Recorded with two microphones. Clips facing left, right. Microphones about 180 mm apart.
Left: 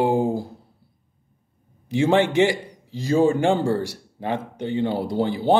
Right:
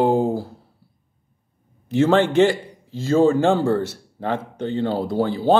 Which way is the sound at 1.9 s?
15° left (ahead or behind).